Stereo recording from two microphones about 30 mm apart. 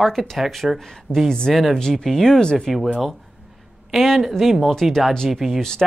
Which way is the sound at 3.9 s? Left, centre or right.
Centre.